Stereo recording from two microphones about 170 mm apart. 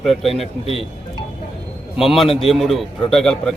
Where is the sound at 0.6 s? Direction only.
35° left (ahead or behind).